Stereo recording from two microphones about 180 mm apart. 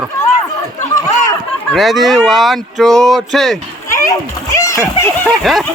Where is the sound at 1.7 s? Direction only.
Centre (ahead or behind).